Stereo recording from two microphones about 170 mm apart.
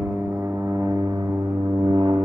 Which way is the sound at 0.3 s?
10° right (ahead or behind).